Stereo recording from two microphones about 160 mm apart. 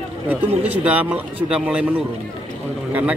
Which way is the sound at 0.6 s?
10° right (ahead or behind).